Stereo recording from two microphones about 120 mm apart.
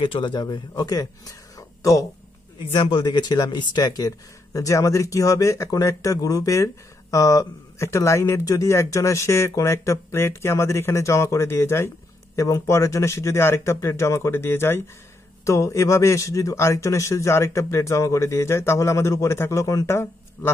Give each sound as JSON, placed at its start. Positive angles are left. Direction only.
{"t": 0.0, "sound": "speech", "side_deg": 45}
{"t": 2.7, "sound": "speech", "side_deg": 40}